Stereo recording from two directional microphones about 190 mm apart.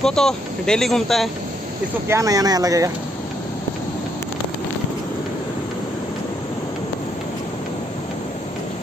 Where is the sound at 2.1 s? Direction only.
15° right (ahead or behind).